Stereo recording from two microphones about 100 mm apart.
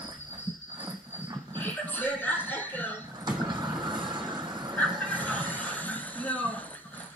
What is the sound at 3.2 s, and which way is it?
Vehicle, 45° right (ahead or behind).